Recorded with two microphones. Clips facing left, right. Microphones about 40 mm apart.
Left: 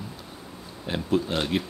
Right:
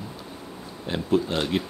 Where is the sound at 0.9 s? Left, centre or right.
Centre.